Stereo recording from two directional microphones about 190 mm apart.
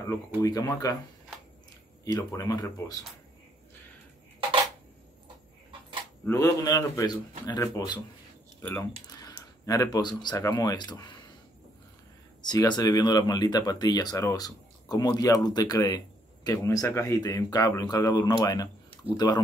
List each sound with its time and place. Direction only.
0.4 s speech: 15° left (ahead or behind)
2.0 s speech: 20° left (ahead or behind)
6.2 s speech: 15° left (ahead or behind)
12.4 s speech: 20° left (ahead or behind)